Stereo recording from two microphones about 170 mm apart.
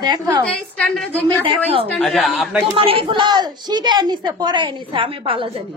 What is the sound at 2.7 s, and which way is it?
A woman's voice, 30° right (ahead or behind).